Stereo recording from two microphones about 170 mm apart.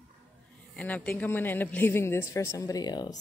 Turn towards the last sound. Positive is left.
turn(degrees=25)  # may be behind; listen again after turning